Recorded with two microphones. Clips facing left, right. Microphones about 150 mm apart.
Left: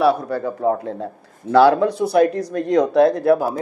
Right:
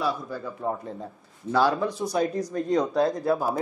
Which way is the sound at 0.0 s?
70° left (ahead or behind).